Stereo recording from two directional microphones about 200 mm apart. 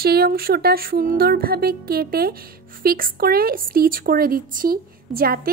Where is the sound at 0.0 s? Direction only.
50° right (ahead or behind).